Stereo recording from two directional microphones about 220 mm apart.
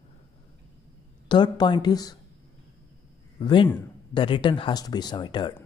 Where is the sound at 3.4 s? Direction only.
20° left (ahead or behind).